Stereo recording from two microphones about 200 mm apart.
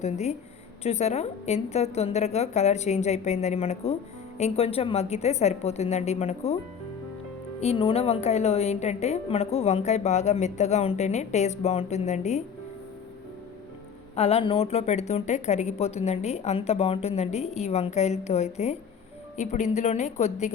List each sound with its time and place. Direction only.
0.0 s a woman's voice: 35° left (ahead or behind)
7.6 s a woman's voice: 30° left (ahead or behind)
14.2 s a woman's voice: 30° left (ahead or behind)